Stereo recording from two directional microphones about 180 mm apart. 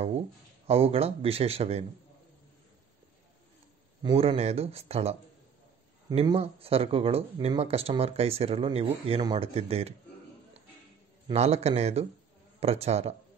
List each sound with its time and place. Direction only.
0.7 s speech: 35° right (ahead or behind)
4.0 s speech: 30° right (ahead or behind)
6.1 s speech: 30° right (ahead or behind)
11.3 s speech: 35° right (ahead or behind)